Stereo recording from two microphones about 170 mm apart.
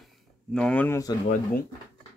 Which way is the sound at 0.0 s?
5° left (ahead or behind).